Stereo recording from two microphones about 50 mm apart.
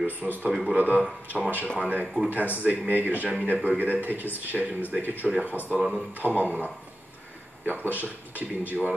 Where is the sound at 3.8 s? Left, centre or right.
Right.